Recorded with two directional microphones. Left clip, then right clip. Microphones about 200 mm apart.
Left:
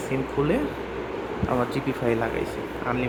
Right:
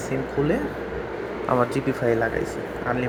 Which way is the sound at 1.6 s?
Centre (ahead or behind).